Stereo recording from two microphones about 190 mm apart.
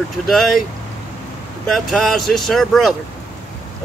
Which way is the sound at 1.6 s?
Centre (ahead or behind).